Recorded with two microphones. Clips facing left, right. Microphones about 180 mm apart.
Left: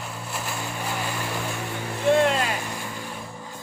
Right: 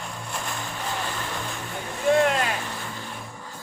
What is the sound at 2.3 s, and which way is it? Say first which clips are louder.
Vehicle: even; 10° left (ahead or behind).